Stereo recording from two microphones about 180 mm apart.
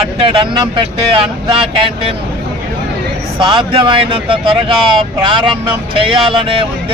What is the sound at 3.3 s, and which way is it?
Speech, 25° right (ahead or behind).